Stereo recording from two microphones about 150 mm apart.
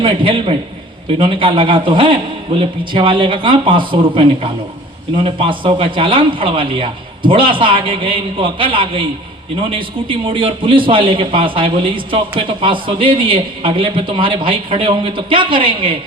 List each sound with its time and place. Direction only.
0.0 s a man's voice: 35° right (ahead or behind)